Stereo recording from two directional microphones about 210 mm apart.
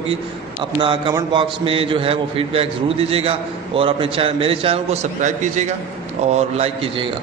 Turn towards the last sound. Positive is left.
turn(degrees=-30)  # may be behind; listen again after turning